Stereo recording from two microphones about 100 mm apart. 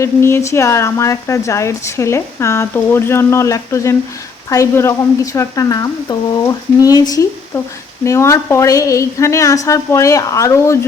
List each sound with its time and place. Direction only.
0.0 s a woman's voice: 25° left (ahead or behind)
7.5 s a woman's voice: 20° left (ahead or behind)